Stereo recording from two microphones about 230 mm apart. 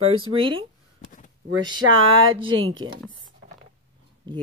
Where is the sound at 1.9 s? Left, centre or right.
Right.